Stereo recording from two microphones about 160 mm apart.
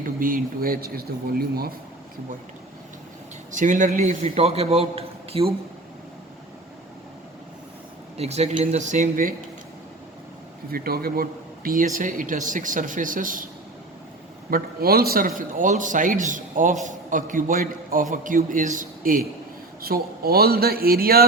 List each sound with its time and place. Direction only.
0.0 s speech: 60° right (ahead or behind)
3.5 s speech: 55° right (ahead or behind)
4.1 s a man's voice: 40° right (ahead or behind)
8.2 s speech: 40° right (ahead or behind)
10.7 s speech: 70° right (ahead or behind)
14.5 s speech: 70° right (ahead or behind)
19.8 s speech: 70° right (ahead or behind)